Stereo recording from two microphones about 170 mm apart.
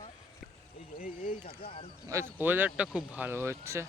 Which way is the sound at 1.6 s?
35° left (ahead or behind).